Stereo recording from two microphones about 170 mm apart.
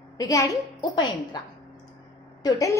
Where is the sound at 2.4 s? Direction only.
20° left (ahead or behind).